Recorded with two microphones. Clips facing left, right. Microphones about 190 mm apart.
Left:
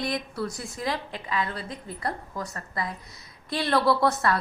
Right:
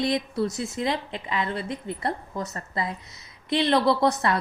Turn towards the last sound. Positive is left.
turn(degrees=-20)  # may be behind; listen again after turning